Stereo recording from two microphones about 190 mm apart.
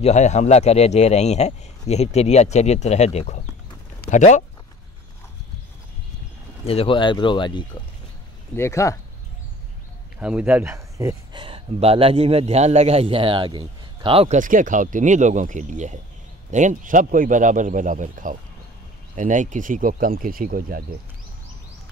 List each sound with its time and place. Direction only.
0.0 s a man's voice: 35° left (ahead or behind)
6.6 s speech: 30° left (ahead or behind); by 8.9 s 15° left (ahead or behind)
10.2 s speech: 5° right (ahead or behind); by 14.4 s 30° right (ahead or behind)
14.4 s speech: 45° right (ahead or behind)